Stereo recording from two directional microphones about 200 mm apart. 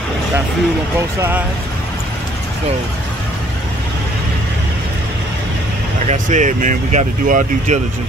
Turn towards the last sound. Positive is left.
turn(degrees=-35)  # may be behind; listen again after turning